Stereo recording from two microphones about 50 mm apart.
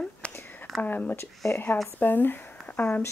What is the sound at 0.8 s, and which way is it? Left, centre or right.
Speech, left.